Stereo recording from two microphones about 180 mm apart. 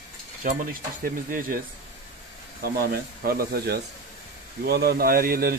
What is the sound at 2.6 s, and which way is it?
Speech, 55° right (ahead or behind).